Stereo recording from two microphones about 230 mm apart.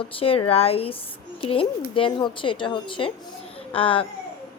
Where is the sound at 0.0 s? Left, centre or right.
Left.